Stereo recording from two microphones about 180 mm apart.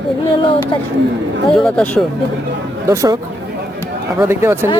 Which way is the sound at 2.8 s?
15° right (ahead or behind).